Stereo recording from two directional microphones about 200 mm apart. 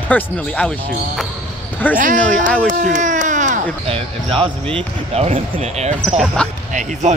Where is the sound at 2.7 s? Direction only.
40° right (ahead or behind).